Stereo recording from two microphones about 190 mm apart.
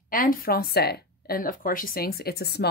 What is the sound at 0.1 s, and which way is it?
Speech, 50° left (ahead or behind).